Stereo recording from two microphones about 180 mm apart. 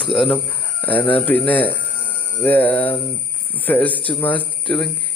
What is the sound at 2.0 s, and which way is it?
Music, 10° left (ahead or behind).